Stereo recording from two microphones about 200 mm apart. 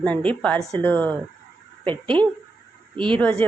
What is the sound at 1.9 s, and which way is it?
Speech, 25° right (ahead or behind).